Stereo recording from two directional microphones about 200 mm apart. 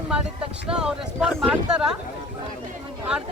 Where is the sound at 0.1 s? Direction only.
5° right (ahead or behind).